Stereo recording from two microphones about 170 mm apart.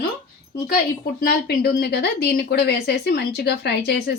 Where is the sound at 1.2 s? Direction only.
60° left (ahead or behind); by 4.1 s 75° left (ahead or behind).